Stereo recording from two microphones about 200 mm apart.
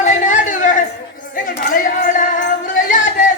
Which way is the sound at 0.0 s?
35° left (ahead or behind).